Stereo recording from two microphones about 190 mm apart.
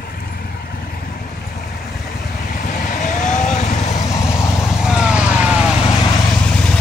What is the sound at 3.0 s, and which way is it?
Vehicle, 40° left (ahead or behind).